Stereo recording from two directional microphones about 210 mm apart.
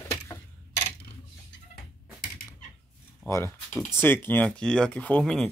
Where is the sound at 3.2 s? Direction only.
10° left (ahead or behind).